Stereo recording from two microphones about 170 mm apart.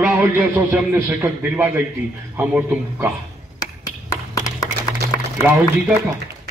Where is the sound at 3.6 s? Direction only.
20° left (ahead or behind).